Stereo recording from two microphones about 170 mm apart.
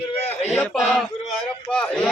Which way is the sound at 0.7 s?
Centre (ahead or behind).